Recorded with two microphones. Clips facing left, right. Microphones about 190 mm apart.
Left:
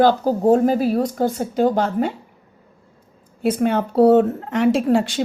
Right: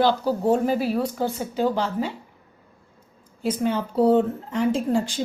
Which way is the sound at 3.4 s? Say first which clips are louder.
Left 5 dB; 60° left (ahead or behind).